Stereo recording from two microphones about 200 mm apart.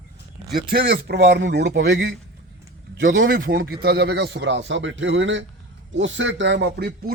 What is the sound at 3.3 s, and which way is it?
A man's voice, 45° right (ahead or behind).